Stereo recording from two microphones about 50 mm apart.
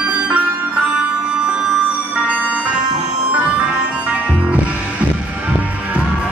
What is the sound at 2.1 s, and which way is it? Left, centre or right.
Music, right.